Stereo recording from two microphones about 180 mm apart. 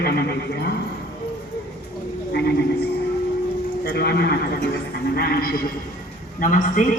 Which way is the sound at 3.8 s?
60° left (ahead or behind).